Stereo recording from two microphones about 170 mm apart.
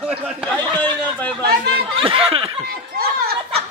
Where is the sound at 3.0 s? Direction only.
65° right (ahead or behind).